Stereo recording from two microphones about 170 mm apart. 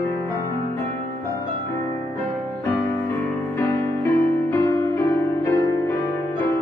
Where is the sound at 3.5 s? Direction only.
15° left (ahead or behind).